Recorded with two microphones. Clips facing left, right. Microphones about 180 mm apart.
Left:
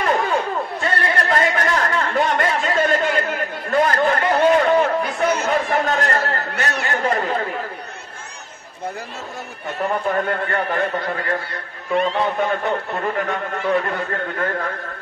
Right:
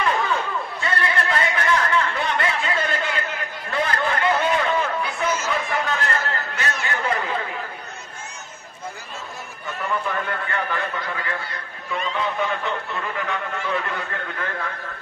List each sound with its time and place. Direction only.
0.0 s chatter: 40° left (ahead or behind)
9.8 s speech: 40° left (ahead or behind)
11.9 s a man's voice: 65° left (ahead or behind)
12.2 s speech: 45° left (ahead or behind)